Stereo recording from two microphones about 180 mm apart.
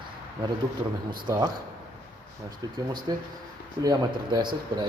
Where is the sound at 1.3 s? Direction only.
20° right (ahead or behind).